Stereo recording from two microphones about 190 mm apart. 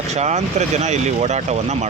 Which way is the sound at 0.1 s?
35° right (ahead or behind).